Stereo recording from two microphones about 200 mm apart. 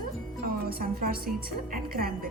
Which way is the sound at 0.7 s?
50° right (ahead or behind).